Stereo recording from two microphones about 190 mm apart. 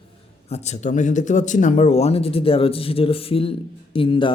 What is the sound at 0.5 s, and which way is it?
Speech, 35° left (ahead or behind).